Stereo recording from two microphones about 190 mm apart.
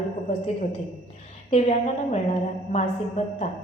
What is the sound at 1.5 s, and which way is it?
Speech, 35° left (ahead or behind).